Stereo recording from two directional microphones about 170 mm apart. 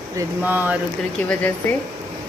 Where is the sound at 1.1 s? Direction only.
5° left (ahead or behind).